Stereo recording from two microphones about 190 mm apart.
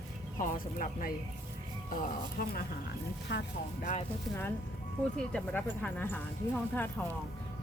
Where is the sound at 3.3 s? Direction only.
70° left (ahead or behind).